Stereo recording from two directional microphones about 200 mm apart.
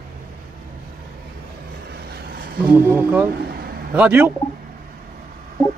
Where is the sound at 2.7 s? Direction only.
10° right (ahead or behind).